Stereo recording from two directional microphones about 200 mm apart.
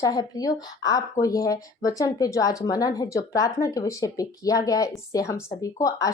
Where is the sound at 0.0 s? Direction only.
20° left (ahead or behind).